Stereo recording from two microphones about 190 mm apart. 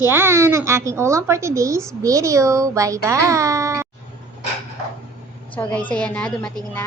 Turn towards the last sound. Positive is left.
turn(degrees=5)  # may be behind; listen again after turning